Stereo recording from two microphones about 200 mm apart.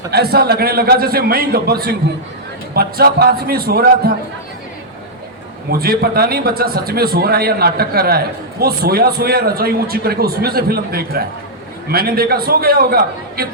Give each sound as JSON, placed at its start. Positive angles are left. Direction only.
{"t": 0.1, "sound": "a man's voice", "side_deg": -50}
{"t": 5.8, "sound": "a man's voice", "side_deg": -50}